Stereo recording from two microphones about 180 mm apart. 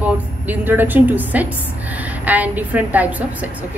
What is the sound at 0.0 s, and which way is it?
A woman's voice, 10° right (ahead or behind).